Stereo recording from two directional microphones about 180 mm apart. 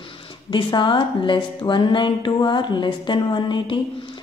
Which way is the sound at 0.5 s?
25° left (ahead or behind).